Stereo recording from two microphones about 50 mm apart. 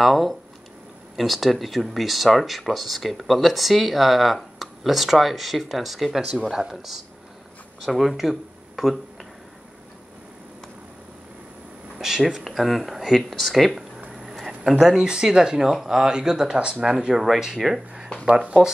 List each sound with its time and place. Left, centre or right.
0.0 s speech: centre
12.0 s speech: centre
14.6 s speech: centre
18.2 s speech: right